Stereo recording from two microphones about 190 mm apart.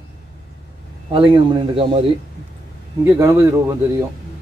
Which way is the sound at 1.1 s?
25° right (ahead or behind).